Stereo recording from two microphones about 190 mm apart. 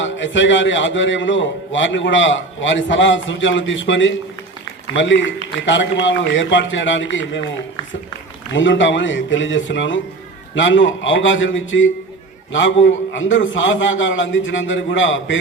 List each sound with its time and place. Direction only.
0.0 s a man's voice: 75° left (ahead or behind)
8.5 s a man's voice: 75° left (ahead or behind)